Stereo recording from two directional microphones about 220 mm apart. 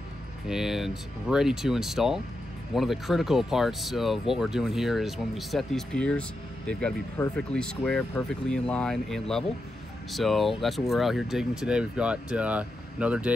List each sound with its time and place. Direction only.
0.5 s speech: centre (ahead or behind)